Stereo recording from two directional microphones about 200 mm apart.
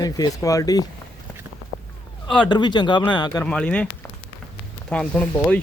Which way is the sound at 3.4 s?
5° left (ahead or behind).